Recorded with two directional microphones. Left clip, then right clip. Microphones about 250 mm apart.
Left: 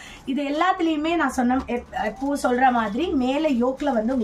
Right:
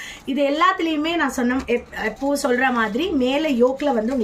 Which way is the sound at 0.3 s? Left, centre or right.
Centre.